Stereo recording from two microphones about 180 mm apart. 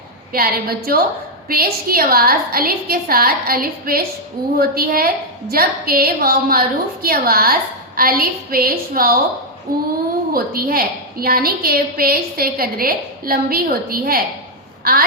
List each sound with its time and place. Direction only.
0.3 s a woman's voice: 55° right (ahead or behind)